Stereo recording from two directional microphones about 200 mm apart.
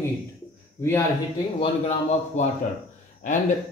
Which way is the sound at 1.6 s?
35° left (ahead or behind).